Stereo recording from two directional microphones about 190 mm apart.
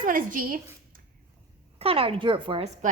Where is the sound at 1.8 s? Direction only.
30° right (ahead or behind).